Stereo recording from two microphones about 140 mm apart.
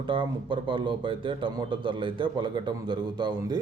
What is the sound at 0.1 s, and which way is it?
A man's voice, 35° right (ahead or behind).